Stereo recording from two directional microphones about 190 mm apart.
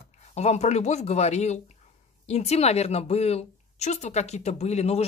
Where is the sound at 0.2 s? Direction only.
35° left (ahead or behind).